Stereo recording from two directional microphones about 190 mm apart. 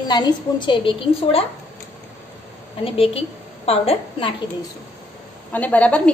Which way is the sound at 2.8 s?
30° left (ahead or behind).